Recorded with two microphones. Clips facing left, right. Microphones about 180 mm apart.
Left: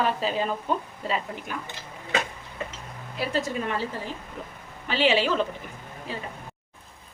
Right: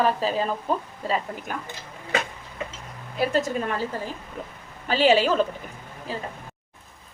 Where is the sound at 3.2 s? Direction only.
45° right (ahead or behind).